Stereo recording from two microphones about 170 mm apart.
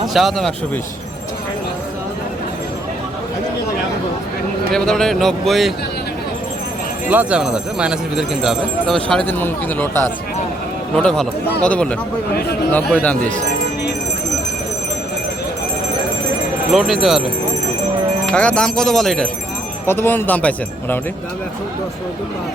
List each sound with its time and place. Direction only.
0.1 s speech: centre (ahead or behind)
4.7 s speech: 5° left (ahead or behind)
7.1 s speech: 10° right (ahead or behind)
12.3 s speech: 65° left (ahead or behind)
12.7 s speech: 10° left (ahead or behind)
16.7 s speech: centre (ahead or behind)
18.3 s speech: 5° left (ahead or behind)
19.9 s speech: 15° left (ahead or behind)